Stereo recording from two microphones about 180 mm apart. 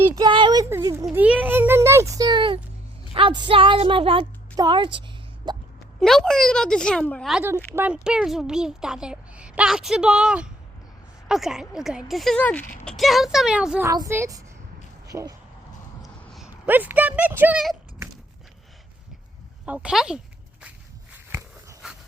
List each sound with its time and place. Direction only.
0.2 s a sound: 25° right (ahead or behind)
3.2 s a woman's voice: 25° right (ahead or behind)
5.5 s plop: 25° right (ahead or behind)
6.0 s a woman's voice: centre (ahead or behind)
13.8 s a woman's voice: 20° right (ahead or behind)
16.0 s speech: centre (ahead or behind)
19.6 s a woman's voice: 5° right (ahead or behind)
21.8 s dog: centre (ahead or behind)